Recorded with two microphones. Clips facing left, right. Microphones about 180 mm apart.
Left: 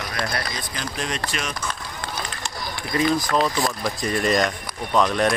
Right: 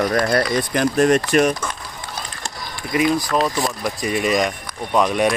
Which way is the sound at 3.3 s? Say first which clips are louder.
Right 2 dB; 10° right (ahead or behind).